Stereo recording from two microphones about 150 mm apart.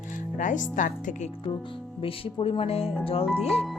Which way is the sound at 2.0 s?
40° left (ahead or behind).